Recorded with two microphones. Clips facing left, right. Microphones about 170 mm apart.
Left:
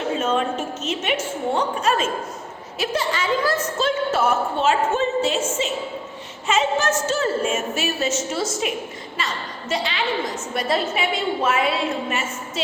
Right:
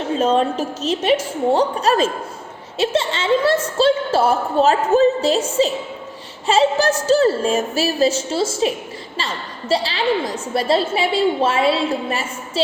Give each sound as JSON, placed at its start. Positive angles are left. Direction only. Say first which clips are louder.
{"t": 0.2, "sound": "a woman's voice", "louder": "right 5 dB", "side_deg": -35}